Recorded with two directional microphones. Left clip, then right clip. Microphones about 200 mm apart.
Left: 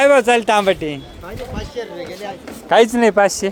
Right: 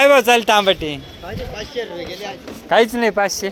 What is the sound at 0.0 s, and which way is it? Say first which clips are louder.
Speech: even; 10° left (ahead or behind).